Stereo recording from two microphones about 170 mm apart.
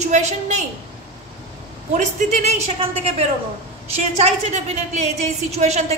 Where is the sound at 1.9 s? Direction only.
45° right (ahead or behind).